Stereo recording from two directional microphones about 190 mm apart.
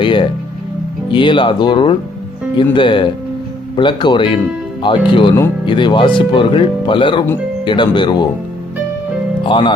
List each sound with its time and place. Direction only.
0.0 s music: 25° left (ahead or behind)
1.1 s speech: 25° left (ahead or behind)
9.4 s speech: 25° left (ahead or behind)